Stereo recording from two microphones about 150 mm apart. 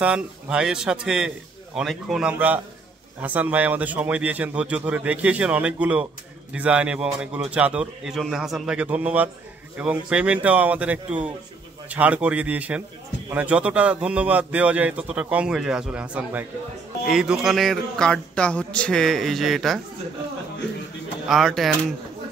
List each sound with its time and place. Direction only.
0.0 s music: 5° right (ahead or behind)
3.2 s a man's voice: 10° right (ahead or behind)
17.0 s music: 5° right (ahead or behind)
21.3 s music: centre (ahead or behind)